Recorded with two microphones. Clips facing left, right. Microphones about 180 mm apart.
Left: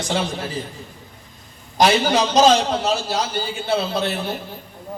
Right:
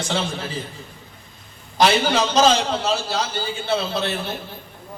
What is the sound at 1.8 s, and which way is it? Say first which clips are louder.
A man's voice: left 1 dB; 15° left (ahead or behind).